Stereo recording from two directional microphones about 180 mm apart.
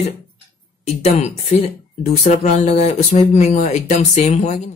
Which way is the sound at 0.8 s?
40° left (ahead or behind).